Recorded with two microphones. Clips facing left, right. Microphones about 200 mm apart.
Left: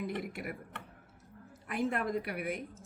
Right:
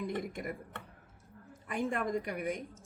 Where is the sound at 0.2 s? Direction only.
5° left (ahead or behind).